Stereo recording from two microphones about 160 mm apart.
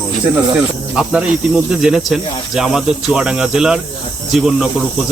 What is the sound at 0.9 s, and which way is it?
Speech, 5° right (ahead or behind).